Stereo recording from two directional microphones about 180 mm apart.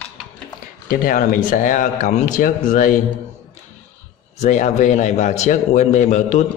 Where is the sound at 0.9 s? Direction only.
50° left (ahead or behind).